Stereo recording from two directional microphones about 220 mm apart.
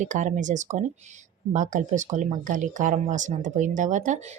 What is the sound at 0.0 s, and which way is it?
Speech, 35° right (ahead or behind).